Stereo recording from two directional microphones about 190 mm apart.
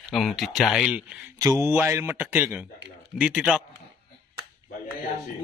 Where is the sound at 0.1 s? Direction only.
Centre (ahead or behind).